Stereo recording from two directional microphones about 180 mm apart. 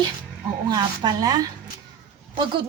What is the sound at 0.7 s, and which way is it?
A woman's voice, 25° right (ahead or behind).